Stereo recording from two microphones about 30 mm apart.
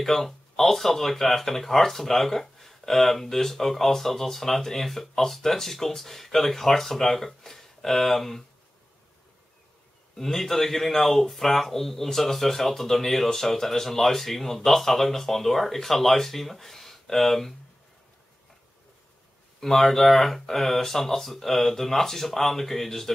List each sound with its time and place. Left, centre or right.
0.0 s speech: centre
10.1 s speech: centre
19.6 s speech: centre